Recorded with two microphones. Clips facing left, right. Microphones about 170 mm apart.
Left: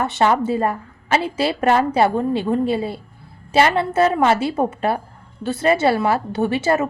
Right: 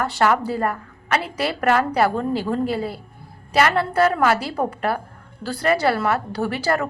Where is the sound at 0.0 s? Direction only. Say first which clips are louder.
Left 2 dB; 25° left (ahead or behind).